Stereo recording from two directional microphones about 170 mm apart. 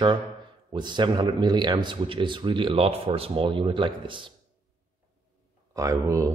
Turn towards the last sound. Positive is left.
turn(degrees=-20)  # may be behind; listen again after turning